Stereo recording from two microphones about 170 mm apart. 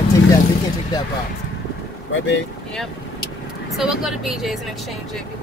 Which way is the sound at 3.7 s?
5° right (ahead or behind).